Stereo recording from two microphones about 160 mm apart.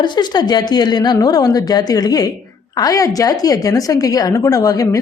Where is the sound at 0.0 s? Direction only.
30° left (ahead or behind).